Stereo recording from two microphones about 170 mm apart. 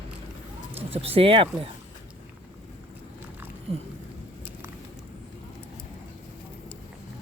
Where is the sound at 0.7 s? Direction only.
35° right (ahead or behind).